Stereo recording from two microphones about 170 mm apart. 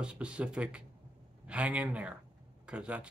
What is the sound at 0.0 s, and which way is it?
Speech, 5° right (ahead or behind).